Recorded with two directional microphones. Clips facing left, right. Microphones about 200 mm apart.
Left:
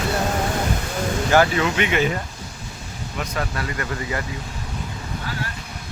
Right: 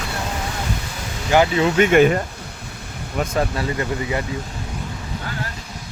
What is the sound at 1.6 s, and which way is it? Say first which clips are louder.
Speech: right 7 dB; 40° right (ahead or behind).